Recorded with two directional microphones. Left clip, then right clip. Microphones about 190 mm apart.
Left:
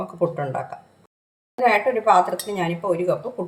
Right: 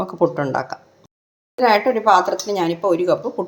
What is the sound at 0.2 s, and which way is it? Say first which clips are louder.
Speech: right 5 dB; 35° right (ahead or behind).